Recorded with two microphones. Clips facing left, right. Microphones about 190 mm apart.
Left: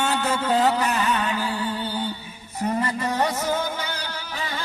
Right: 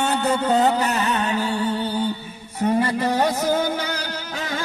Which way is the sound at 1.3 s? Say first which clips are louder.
Right 4 dB; 25° right (ahead or behind).